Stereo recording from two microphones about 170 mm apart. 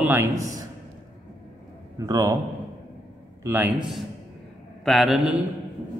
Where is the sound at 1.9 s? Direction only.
20° right (ahead or behind).